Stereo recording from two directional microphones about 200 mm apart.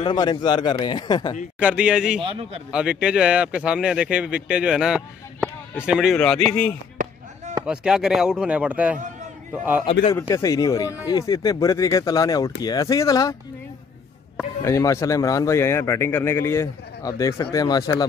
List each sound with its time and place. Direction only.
0.0 s speech: 20° left (ahead or behind)
1.6 s a man's voice: 5° right (ahead or behind)
2.2 s a man's voice: 25° right (ahead or behind)
2.7 s a man's voice: 5° right (ahead or behind)
10.1 s a man's voice: 15° left (ahead or behind)
14.6 s a man's voice: 15° left (ahead or behind)